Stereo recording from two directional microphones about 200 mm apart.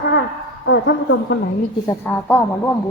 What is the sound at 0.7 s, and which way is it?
Speech, 65° left (ahead or behind).